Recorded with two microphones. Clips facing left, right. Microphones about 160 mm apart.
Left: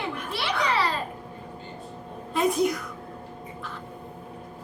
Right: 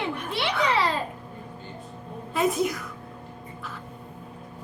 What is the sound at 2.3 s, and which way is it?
Speech, centre (ahead or behind).